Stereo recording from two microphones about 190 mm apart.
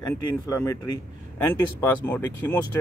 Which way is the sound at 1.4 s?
10° left (ahead or behind).